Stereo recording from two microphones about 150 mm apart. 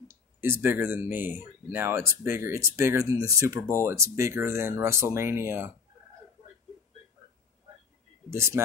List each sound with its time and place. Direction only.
0.1 s speech: 15° right (ahead or behind)
8.3 s speech: 15° right (ahead or behind)